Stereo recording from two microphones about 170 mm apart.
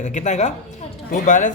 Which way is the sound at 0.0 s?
45° left (ahead or behind).